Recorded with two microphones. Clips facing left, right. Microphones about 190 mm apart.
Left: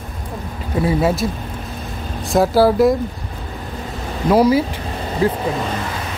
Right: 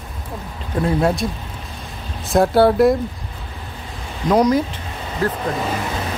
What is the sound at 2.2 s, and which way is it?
Speech, centre (ahead or behind).